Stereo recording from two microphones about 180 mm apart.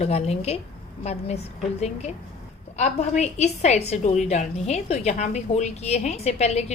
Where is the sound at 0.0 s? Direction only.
35° left (ahead or behind).